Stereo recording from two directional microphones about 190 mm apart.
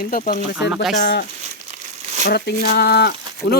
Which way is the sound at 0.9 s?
60° left (ahead or behind).